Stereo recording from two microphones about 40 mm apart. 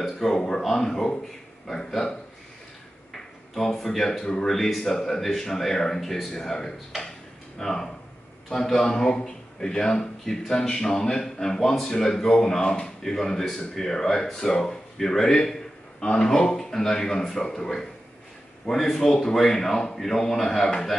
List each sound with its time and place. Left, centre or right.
0.0 s a man's voice: centre
3.5 s a man's voice: centre
7.0 s tick-tock: centre
8.5 s a man's voice: centre
18.7 s a man's voice: left
19.3 s a man's voice: centre